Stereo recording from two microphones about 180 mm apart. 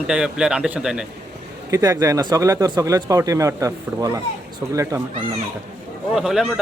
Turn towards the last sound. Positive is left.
turn(degrees=0)  # may be behind; listen again after turning